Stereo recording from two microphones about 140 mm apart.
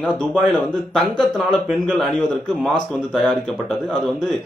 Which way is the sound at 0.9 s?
Centre (ahead or behind).